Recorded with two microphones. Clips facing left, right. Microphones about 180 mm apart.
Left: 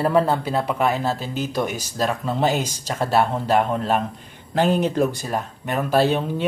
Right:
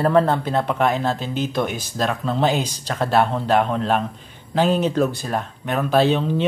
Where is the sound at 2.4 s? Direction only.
45° left (ahead or behind).